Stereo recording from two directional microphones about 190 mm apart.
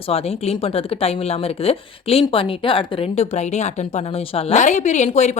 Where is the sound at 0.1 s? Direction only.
30° left (ahead or behind).